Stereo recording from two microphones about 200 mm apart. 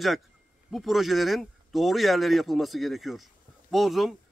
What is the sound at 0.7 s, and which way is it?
A man's voice, centre (ahead or behind).